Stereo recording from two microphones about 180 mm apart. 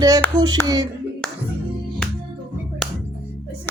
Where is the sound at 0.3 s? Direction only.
20° right (ahead or behind).